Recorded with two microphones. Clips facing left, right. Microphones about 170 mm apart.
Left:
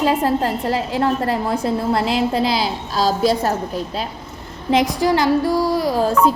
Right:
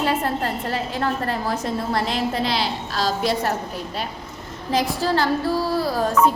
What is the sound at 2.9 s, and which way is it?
Speech, 40° left (ahead or behind).